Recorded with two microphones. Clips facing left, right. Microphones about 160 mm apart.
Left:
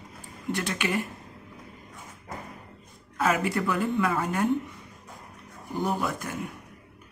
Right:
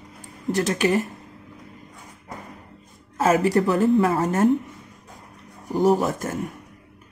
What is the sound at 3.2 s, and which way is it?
A woman's voice, 40° right (ahead or behind).